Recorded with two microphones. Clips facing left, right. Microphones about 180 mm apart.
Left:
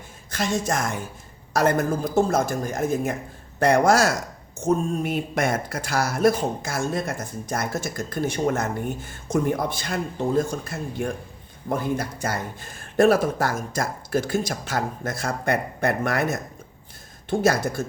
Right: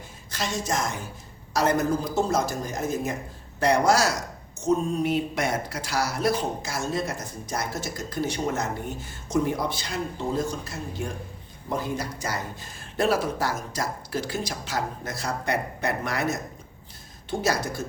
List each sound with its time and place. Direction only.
0.3 s speech: 55° left (ahead or behind)